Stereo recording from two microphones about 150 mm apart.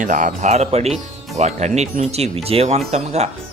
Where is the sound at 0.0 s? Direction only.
55° right (ahead or behind).